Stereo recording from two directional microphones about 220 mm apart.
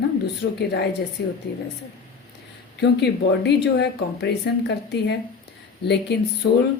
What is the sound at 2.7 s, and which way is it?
Speech, 50° left (ahead or behind).